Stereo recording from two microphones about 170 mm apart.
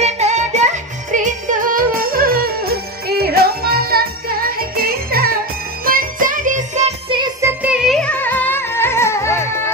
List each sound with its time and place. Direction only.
0.0 s music: 40° right (ahead or behind)
7.4 s music: 5° right (ahead or behind); by 9.6 s 15° left (ahead or behind)